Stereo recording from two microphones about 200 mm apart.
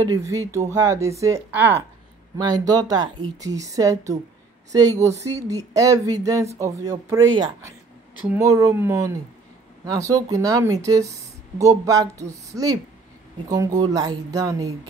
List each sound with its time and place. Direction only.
0.0 s speech: 15° right (ahead or behind)
8.3 s speech: 15° right (ahead or behind)